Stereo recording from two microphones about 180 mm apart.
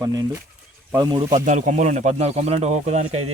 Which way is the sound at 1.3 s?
45° right (ahead or behind).